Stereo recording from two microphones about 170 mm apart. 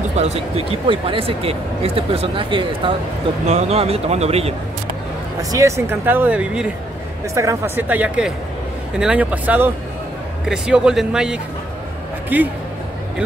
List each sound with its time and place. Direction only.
0.1 s speech: 40° right (ahead or behind)
5.4 s speech: 20° right (ahead or behind)
7.3 s speech: 15° right (ahead or behind)